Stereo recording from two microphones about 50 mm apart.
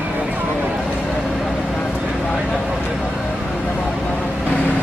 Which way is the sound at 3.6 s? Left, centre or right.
Left.